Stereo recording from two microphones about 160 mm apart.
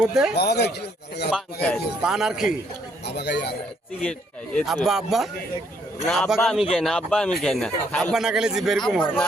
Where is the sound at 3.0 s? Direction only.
90° left.